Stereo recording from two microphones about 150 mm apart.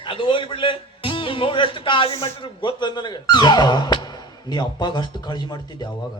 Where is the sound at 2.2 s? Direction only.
35° left (ahead or behind).